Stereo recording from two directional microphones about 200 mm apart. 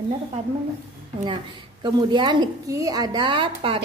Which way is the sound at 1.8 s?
25° right (ahead or behind).